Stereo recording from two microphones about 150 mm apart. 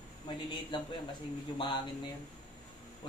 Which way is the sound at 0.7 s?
35° left (ahead or behind).